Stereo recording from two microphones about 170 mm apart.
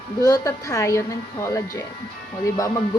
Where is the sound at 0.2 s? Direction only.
20° left (ahead or behind).